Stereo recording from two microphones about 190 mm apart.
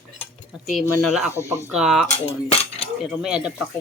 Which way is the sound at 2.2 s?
30° left (ahead or behind).